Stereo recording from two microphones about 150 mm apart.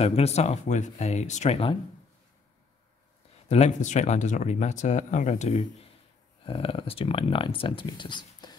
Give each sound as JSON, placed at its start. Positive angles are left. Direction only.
{"t": 0.0, "sound": "speech", "side_deg": 45}
{"t": 3.4, "sound": "speech", "side_deg": 45}
{"t": 6.4, "sound": "speech", "side_deg": 40}